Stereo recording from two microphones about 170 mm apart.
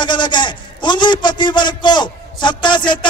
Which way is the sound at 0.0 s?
25° left (ahead or behind).